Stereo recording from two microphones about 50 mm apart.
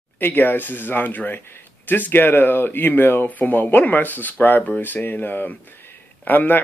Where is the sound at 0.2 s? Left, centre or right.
Left.